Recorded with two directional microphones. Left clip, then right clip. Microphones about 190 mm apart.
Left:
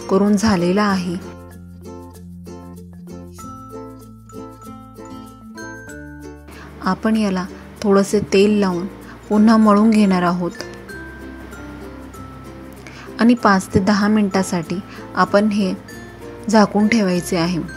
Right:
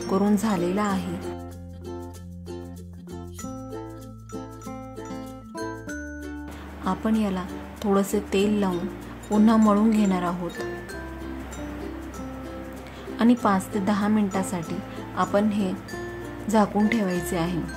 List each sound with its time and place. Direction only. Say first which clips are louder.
0.1 s a woman's voice: left 8 dB; 25° left (ahead or behind)
6.8 s a woman's voice: left 7 dB; 25° left (ahead or behind)
13.1 s a woman's voice: left 7 dB; 30° left (ahead or behind)